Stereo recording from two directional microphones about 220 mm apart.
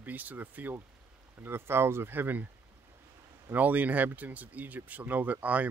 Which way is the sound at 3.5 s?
5° right (ahead or behind).